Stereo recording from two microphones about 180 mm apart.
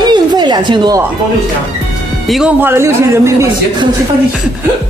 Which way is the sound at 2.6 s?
15° right (ahead or behind).